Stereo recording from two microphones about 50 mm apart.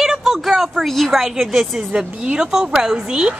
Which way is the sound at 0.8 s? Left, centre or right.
Centre.